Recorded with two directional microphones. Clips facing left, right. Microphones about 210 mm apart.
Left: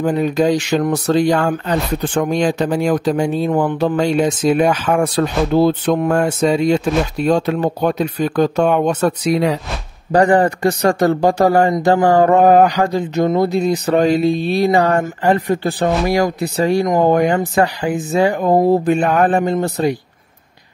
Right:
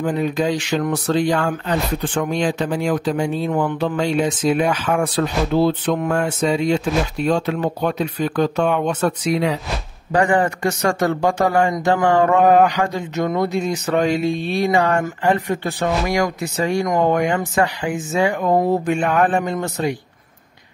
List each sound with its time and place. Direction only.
0.0 s speech: 40° left (ahead or behind)